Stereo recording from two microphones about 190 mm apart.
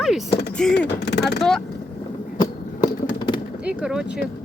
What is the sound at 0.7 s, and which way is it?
Speech, 65° left (ahead or behind).